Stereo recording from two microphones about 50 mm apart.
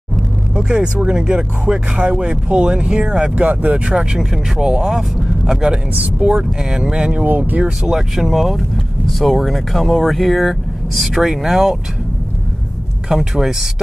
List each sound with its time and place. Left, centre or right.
0.6 s speech: centre
3.3 s speech: right
3.7 s speech: right
7.2 s speech: right
7.8 s speech: centre
8.3 s speech: centre
13.1 s speech: centre